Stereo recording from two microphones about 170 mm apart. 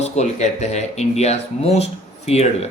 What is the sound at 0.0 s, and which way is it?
Speech, 40° left (ahead or behind).